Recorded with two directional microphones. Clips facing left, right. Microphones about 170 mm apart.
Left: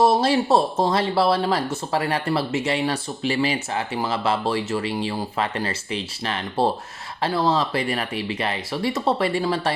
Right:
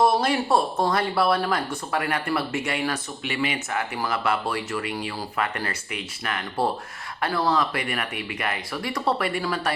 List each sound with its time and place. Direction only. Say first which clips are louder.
0.0 s speech: left 3 dB; 25° left (ahead or behind)